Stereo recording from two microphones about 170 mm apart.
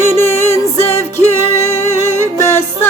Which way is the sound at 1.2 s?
40° left (ahead or behind).